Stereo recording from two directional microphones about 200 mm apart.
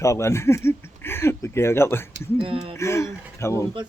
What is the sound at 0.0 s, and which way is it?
Speech, 15° left (ahead or behind).